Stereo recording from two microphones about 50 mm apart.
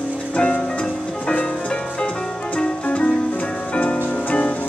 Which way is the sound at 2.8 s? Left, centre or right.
Left.